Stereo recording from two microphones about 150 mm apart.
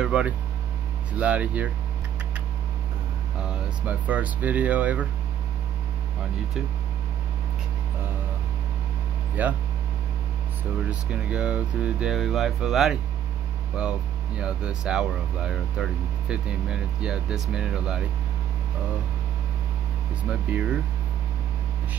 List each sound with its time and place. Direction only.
0.0 s speech: 5° right (ahead or behind)
3.4 s speech: 10° right (ahead or behind)
9.4 s speech: 10° right (ahead or behind)
10.9 s speech: 10° right (ahead or behind)
20.5 s speech: 10° right (ahead or behind)